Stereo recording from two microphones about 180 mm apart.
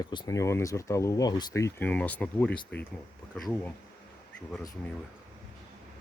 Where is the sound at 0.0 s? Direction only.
25° left (ahead or behind); by 2.6 s 10° left (ahead or behind).